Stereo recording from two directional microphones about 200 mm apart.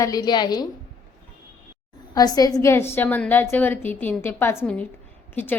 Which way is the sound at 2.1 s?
20° left (ahead or behind).